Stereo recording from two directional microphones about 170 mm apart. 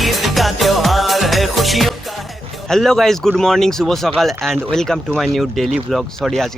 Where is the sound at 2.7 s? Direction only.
Centre (ahead or behind).